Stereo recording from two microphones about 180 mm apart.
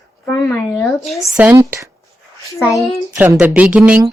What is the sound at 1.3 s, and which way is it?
Speech, 10° right (ahead or behind).